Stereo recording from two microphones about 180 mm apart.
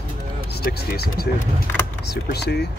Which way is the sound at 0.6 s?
55° left (ahead or behind).